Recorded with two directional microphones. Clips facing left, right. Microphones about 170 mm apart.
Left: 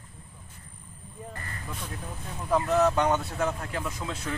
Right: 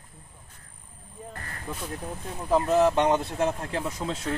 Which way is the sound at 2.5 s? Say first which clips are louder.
Right 2 dB; 25° right (ahead or behind).